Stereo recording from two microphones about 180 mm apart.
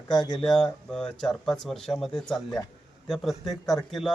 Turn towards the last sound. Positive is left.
turn(degrees=0)  # may be behind; listen again after turning